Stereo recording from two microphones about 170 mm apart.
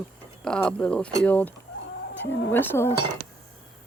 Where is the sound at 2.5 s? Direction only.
10° left (ahead or behind).